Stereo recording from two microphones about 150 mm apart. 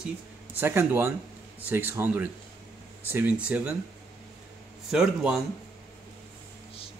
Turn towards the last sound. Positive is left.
turn(degrees=-5)  # may be behind; listen again after turning